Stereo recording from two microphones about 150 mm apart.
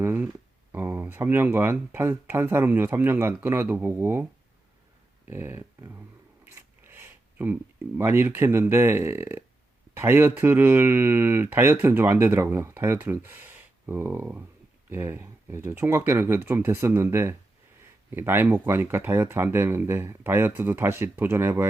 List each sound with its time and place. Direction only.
0.0 s a sound: 15° right (ahead or behind)
0.7 s speech: 15° right (ahead or behind)
5.3 s speech: 15° right (ahead or behind)